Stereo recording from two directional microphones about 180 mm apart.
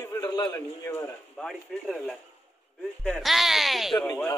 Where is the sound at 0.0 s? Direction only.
20° left (ahead or behind).